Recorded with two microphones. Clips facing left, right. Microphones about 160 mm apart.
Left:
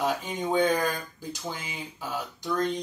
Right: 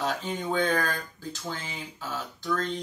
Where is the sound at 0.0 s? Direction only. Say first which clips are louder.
Left 2 dB; 15° left (ahead or behind).